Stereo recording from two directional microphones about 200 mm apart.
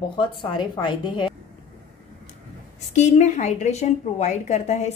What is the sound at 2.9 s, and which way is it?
A woman's voice, 35° left (ahead or behind).